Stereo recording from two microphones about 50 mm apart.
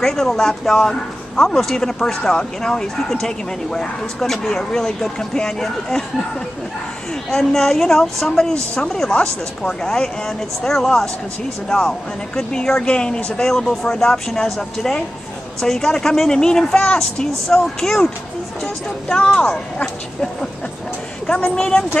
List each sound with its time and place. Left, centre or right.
0.0 s speech: centre
7.2 s speech: centre
12.4 s speech: centre
19.0 s speech: centre
21.3 s speech: left